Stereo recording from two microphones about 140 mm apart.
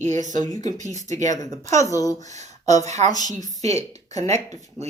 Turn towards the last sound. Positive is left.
turn(degrees=-50)  # may be behind; listen again after turning